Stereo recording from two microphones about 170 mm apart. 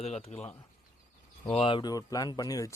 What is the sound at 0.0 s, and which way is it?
Speech, 40° left (ahead or behind).